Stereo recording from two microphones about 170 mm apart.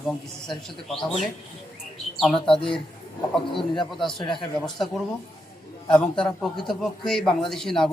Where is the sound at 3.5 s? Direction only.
30° left (ahead or behind).